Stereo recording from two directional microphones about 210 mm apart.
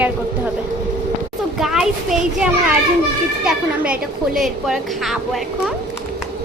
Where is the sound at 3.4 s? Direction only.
5° right (ahead or behind).